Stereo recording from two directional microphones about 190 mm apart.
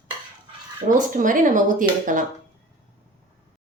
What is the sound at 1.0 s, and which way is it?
Speech, 45° right (ahead or behind).